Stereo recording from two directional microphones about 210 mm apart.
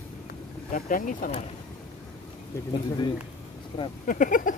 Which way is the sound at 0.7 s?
40° left (ahead or behind).